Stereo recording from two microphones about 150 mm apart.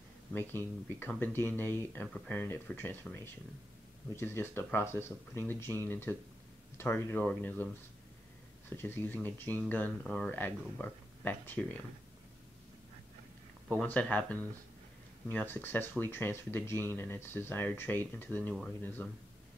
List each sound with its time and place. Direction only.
0.3 s speech: 15° left (ahead or behind)
8.6 s speech: 15° left (ahead or behind)
13.7 s speech: 10° left (ahead or behind)